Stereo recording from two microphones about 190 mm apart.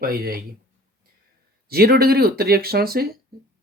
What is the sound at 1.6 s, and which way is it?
Speech, 55° right (ahead or behind).